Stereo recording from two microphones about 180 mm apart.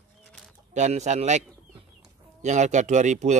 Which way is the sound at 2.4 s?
40° right (ahead or behind).